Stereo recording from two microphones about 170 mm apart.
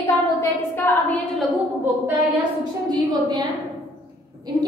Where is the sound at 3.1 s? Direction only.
25° right (ahead or behind).